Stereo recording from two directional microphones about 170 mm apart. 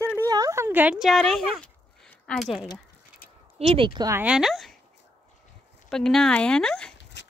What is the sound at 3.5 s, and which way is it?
Speech, 35° right (ahead or behind).